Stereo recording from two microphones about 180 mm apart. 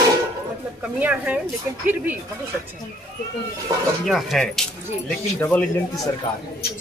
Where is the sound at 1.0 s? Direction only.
10° right (ahead or behind).